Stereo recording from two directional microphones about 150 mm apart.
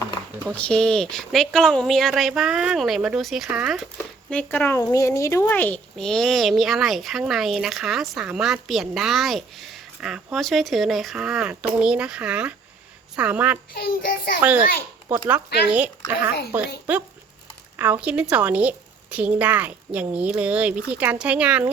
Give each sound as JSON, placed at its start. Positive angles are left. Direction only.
{"t": 0.5, "sound": "speech", "side_deg": 5}
{"t": 4.3, "sound": "a woman's voice", "side_deg": 10}
{"t": 13.7, "sound": "child singing", "side_deg": 80}
{"t": 15.1, "sound": "a woman's voice", "side_deg": -10}
{"t": 17.7, "sound": "a woman's voice", "side_deg": -10}